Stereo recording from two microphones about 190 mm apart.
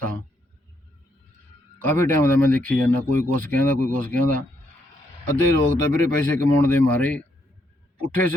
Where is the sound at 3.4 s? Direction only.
45° right (ahead or behind).